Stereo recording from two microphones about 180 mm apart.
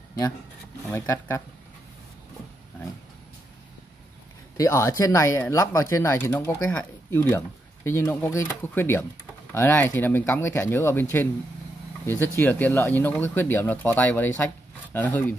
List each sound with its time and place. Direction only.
0.8 s speech: 15° left (ahead or behind)
4.6 s speech: 15° left (ahead or behind)